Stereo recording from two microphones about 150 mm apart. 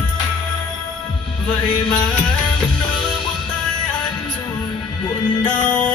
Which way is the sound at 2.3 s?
30° left (ahead or behind).